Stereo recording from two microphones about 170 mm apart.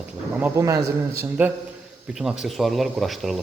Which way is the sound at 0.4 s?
20° right (ahead or behind).